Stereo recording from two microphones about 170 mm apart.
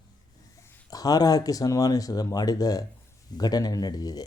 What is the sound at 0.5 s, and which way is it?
Speech, 15° left (ahead or behind).